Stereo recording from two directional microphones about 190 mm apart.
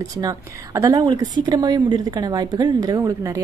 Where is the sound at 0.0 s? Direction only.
20° right (ahead or behind).